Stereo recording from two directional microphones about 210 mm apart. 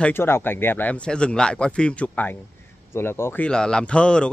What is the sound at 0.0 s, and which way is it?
Speech, 10° left (ahead or behind).